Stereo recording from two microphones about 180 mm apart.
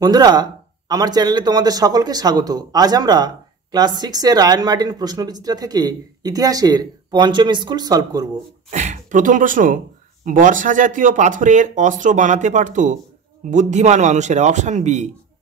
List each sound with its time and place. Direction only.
0.0 s speech: 20° right (ahead or behind)
8.6 s a man's voice: 40° right (ahead or behind)